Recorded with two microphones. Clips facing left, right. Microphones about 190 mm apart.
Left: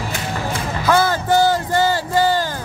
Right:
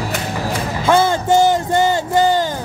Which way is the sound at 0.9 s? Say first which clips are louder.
Right 2 dB; 25° right (ahead or behind).